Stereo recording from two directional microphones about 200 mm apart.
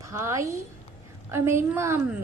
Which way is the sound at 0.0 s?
15° right (ahead or behind).